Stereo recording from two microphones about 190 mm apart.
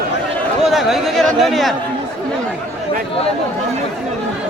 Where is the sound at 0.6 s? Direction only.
Centre (ahead or behind).